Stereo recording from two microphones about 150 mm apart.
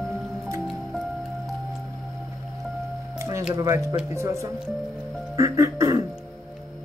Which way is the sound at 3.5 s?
25° right (ahead or behind).